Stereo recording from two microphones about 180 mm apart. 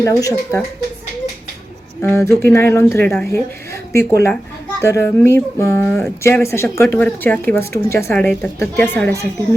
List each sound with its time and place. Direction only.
0.0 s speech: 20° left (ahead or behind)
2.0 s speech: 15° left (ahead or behind)